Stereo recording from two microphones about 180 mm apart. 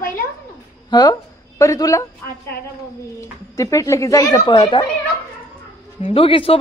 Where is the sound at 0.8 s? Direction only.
20° left (ahead or behind).